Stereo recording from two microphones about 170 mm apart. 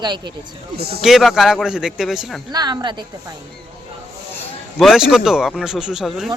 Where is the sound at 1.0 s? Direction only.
Centre (ahead or behind).